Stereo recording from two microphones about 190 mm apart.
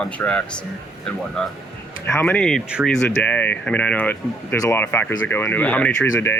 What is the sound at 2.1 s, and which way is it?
Speech, 10° left (ahead or behind).